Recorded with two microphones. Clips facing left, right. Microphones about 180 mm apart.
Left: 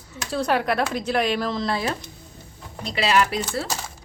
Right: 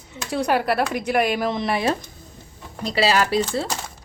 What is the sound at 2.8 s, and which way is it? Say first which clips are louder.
Speech: right 1 dB; 35° right (ahead or behind).